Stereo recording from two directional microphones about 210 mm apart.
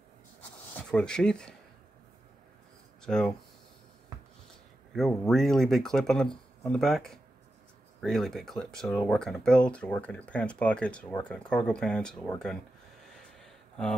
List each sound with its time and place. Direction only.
0.7 s speech: 5° left (ahead or behind)
3.0 s speech: 5° left (ahead or behind)
4.9 s speech: centre (ahead or behind)
13.4 s a sound: 5° left (ahead or behind)